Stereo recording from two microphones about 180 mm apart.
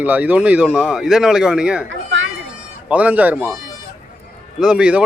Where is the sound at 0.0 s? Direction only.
10° right (ahead or behind).